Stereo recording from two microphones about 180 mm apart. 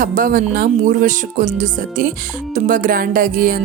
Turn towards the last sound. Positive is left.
turn(degrees=-50)  # may be behind; listen again after turning